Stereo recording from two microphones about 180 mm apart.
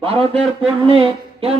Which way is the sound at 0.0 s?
35° right (ahead or behind).